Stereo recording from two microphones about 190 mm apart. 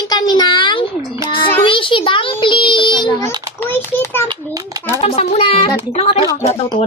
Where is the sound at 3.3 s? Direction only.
20° right (ahead or behind).